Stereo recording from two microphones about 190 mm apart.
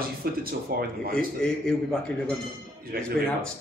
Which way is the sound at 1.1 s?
5° left (ahead or behind).